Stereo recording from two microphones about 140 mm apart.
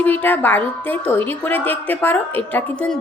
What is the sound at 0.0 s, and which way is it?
A woman's voice, 10° left (ahead or behind).